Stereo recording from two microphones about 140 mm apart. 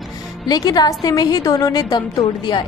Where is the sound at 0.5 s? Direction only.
30° left (ahead or behind).